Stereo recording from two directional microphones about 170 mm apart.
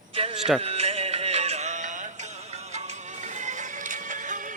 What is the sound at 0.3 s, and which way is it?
Speech, 5° right (ahead or behind).